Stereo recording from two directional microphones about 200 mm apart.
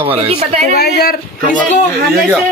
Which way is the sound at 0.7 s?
50° left (ahead or behind).